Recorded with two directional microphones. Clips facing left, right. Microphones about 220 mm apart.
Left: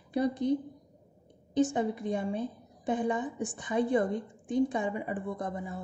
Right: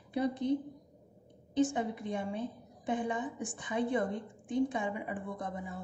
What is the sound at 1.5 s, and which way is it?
A woman's voice, 40° left (ahead or behind).